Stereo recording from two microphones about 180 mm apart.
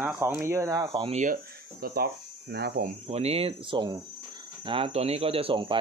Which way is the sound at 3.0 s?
35° right (ahead or behind).